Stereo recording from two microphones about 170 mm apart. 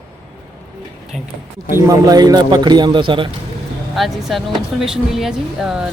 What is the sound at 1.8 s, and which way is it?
A man's voice, 20° right (ahead or behind).